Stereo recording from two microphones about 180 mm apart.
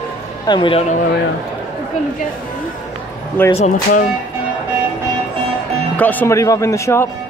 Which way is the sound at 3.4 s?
10° left (ahead or behind).